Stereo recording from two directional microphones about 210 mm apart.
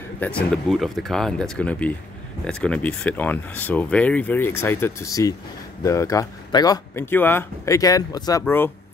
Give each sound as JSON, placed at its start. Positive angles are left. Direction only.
{"t": 0.2, "sound": "speech", "side_deg": 5}